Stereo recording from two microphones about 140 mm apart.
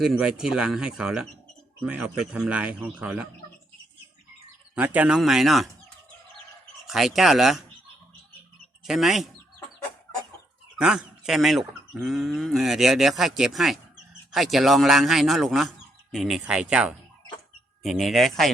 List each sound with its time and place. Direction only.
0.0 s a man's voice: 5° right (ahead or behind)
4.7 s speech: 10° right (ahead or behind)
6.8 s speech: centre (ahead or behind)
8.8 s speech: centre (ahead or behind)
10.8 s a man's voice: 5° right (ahead or behind)